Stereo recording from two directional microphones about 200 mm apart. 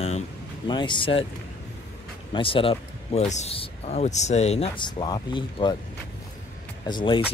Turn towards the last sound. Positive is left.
turn(degrees=25)  # may be behind; listen again after turning